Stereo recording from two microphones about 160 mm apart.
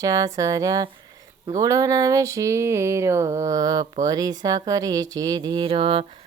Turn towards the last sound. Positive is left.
turn(degrees=-35)  # may be behind; listen again after turning